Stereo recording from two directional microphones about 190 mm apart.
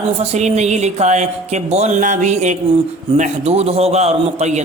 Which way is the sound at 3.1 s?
35° right (ahead or behind).